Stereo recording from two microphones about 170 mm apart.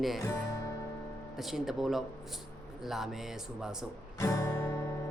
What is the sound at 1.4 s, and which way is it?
Speech, centre (ahead or behind).